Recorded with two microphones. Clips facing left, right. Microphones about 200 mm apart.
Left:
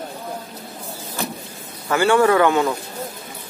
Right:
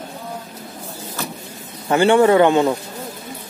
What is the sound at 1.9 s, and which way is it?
Speech, 25° right (ahead or behind).